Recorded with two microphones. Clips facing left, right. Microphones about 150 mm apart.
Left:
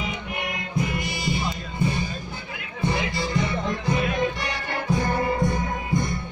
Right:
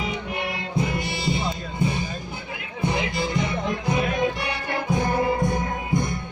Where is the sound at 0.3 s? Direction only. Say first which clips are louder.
Right 2 dB; 30° right (ahead or behind).